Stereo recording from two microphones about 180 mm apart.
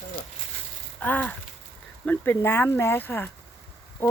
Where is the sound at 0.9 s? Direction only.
10° left (ahead or behind).